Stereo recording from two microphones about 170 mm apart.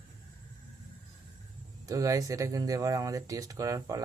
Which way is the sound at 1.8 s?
20° right (ahead or behind).